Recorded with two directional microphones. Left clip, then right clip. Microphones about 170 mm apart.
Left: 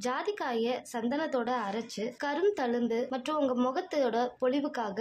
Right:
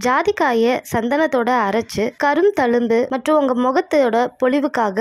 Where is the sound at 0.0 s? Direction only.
50° right (ahead or behind).